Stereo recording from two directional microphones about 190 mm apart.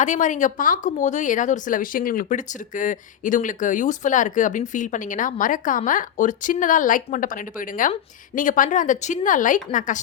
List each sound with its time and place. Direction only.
0.0 s speech: 40° left (ahead or behind)